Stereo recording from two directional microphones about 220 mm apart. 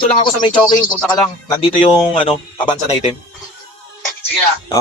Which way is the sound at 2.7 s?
30° left (ahead or behind).